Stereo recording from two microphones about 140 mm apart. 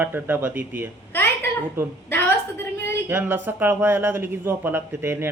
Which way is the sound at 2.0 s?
15° left (ahead or behind).